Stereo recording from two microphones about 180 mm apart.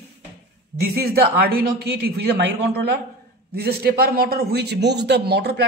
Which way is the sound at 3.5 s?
60° right (ahead or behind).